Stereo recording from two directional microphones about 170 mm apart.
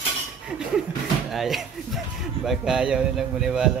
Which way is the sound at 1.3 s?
Centre (ahead or behind).